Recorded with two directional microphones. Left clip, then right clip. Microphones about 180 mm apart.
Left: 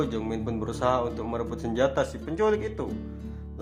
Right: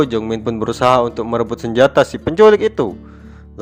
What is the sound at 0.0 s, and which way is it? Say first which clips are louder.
A man's voice: right 12 dB; 40° right (ahead or behind).